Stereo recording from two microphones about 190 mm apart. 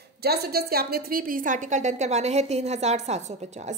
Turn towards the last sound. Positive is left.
turn(degrees=-35)  # may be behind; listen again after turning